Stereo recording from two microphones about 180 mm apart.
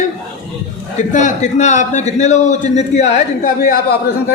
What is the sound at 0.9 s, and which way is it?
A man's voice, 40° left (ahead or behind).